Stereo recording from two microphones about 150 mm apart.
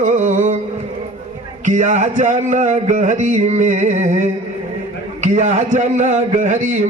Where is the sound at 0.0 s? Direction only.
55° right (ahead or behind).